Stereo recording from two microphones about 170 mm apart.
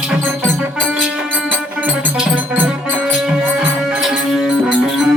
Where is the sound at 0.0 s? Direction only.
5° right (ahead or behind).